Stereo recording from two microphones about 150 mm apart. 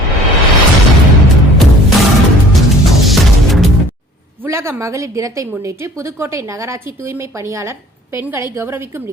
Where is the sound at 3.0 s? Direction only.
Centre (ahead or behind).